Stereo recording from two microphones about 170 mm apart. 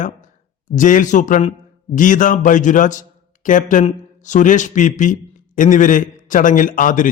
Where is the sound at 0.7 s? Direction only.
50° left (ahead or behind).